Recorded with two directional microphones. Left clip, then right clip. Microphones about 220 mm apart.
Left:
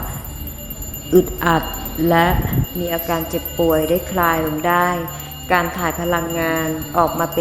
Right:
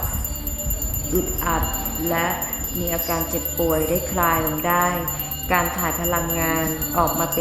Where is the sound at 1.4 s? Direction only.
25° left (ahead or behind).